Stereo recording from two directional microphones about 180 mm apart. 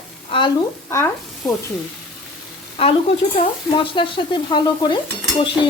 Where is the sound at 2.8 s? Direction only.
30° left (ahead or behind).